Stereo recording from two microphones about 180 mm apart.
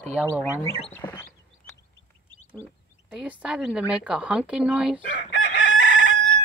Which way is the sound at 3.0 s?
5° right (ahead or behind).